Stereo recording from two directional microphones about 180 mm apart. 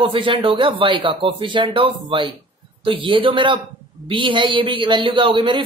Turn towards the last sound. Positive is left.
turn(degrees=-30)  # may be behind; listen again after turning